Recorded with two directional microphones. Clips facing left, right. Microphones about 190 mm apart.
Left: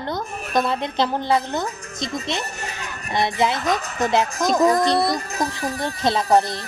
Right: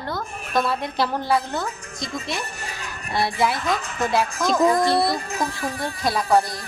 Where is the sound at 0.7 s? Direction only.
20° left (ahead or behind).